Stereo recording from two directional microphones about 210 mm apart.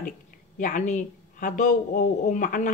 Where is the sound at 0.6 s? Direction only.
35° left (ahead or behind).